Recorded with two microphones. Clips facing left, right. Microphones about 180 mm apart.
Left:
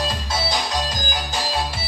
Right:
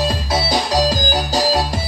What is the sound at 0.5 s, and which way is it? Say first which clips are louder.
Music: right 8 dB; 35° right (ahead or behind).